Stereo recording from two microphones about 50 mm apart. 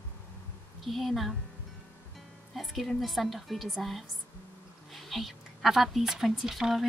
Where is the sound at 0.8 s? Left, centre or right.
Centre.